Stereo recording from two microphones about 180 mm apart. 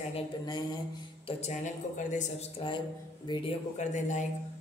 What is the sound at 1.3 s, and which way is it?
Speech, 35° left (ahead or behind).